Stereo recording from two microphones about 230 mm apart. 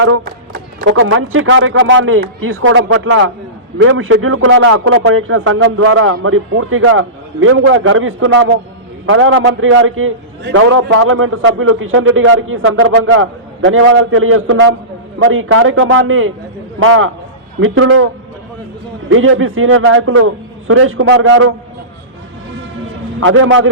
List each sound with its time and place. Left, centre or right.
0.0 s a sound: right
0.8 s a man's voice: right
5.7 s a man's voice: right
23.2 s a man's voice: right